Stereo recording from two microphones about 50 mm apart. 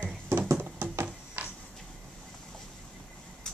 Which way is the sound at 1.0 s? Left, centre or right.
Right.